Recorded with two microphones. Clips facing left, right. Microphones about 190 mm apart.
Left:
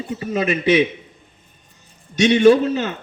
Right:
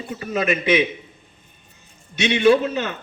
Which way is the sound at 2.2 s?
40° left (ahead or behind).